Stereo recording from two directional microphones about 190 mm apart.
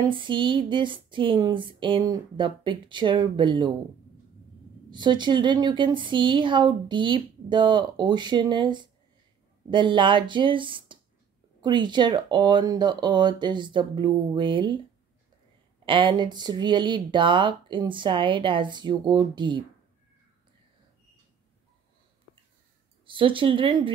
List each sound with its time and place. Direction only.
0.0 s a woman's voice: 25° right (ahead or behind)
4.9 s a woman's voice: 25° right (ahead or behind)
15.8 s a woman's voice: 25° right (ahead or behind)
23.0 s a woman's voice: 25° right (ahead or behind)